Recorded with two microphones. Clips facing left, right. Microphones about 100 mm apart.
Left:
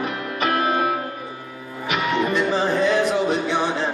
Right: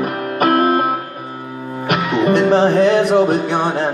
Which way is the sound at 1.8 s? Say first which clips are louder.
Right 6 dB; 65° right (ahead or behind).